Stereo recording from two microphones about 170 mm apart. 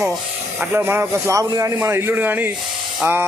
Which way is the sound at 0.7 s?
15° right (ahead or behind).